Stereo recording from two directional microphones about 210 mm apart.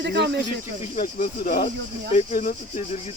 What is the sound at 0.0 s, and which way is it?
Cricket, 55° right (ahead or behind).